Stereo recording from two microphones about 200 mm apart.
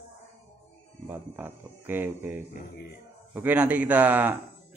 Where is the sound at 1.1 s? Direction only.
10° right (ahead or behind).